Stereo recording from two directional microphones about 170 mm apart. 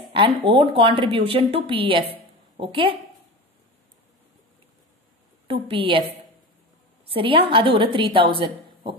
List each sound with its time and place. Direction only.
0.1 s a woman's voice: 30° right (ahead or behind)
5.5 s a woman's voice: 30° right (ahead or behind)